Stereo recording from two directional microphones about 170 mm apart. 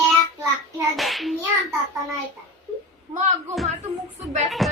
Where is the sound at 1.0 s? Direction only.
Centre (ahead or behind).